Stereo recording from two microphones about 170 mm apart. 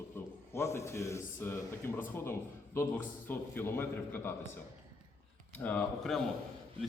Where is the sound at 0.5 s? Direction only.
15° left (ahead or behind).